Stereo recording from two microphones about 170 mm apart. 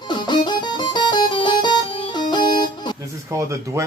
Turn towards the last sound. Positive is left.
turn(degrees=-15)  # may be behind; listen again after turning